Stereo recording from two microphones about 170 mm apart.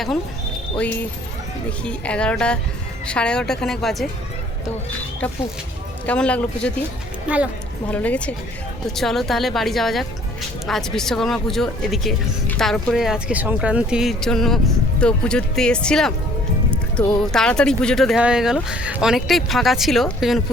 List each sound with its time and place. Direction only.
2.0 s speech: 5° left (ahead or behind)
6.1 s a man's voice: 5° left (ahead or behind)
7.9 s a man's voice: 10° left (ahead or behind)